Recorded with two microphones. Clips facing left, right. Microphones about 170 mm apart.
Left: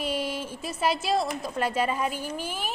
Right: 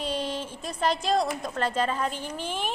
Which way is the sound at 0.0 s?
10° left (ahead or behind).